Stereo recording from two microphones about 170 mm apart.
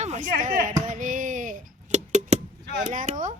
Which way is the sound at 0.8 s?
50° right (ahead or behind).